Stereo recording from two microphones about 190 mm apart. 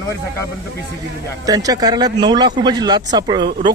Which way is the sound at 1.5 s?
20° right (ahead or behind).